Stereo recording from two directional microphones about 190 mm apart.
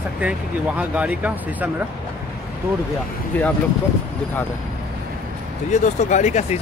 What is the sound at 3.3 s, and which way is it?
Speech, 10° left (ahead or behind).